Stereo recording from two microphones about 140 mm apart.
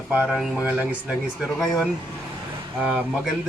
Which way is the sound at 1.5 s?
25° left (ahead or behind).